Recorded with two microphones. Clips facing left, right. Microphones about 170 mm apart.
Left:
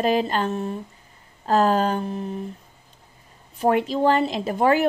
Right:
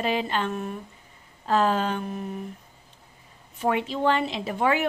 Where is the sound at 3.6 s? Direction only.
40° left (ahead or behind).